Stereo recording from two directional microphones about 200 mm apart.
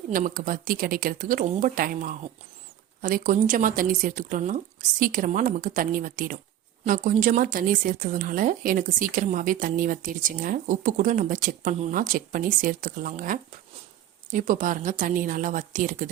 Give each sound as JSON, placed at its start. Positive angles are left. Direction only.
{"t": 0.1, "sound": "a woman's voice", "side_deg": -45}